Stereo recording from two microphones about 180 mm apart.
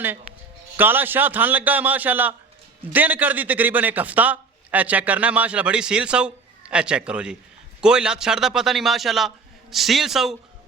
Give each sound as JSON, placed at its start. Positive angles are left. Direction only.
{"t": 0.8, "sound": "a man's voice", "side_deg": -10}